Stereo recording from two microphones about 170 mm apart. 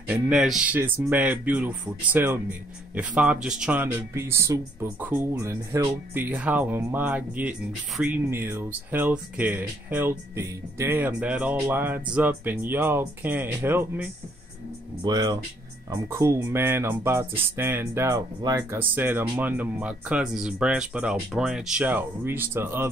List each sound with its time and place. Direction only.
0.1 s speech: 5° right (ahead or behind)
15.0 s speech: 25° right (ahead or behind)